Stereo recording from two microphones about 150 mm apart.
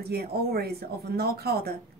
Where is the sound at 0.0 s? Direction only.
90° right.